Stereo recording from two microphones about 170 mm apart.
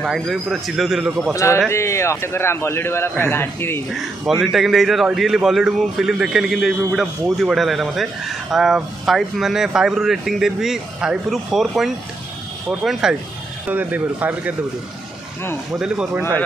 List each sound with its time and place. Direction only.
0.0 s speech: centre (ahead or behind)
1.3 s a man's voice: 15° left (ahead or behind)
4.4 s speech: centre (ahead or behind)
13.0 s speech: 5° right (ahead or behind)
15.7 s speech: 5° right (ahead or behind)